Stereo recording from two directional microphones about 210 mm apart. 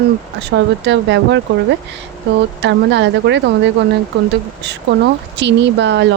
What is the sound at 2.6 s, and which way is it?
Speech, 55° right (ahead or behind).